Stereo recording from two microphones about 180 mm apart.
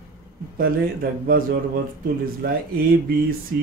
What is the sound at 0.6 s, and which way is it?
Speech, 55° right (ahead or behind).